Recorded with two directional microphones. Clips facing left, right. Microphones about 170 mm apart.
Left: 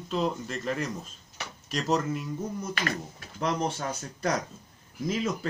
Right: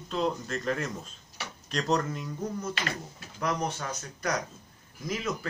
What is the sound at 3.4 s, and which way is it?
Speech, 25° left (ahead or behind).